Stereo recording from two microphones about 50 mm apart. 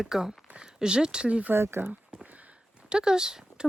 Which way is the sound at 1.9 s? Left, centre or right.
Right.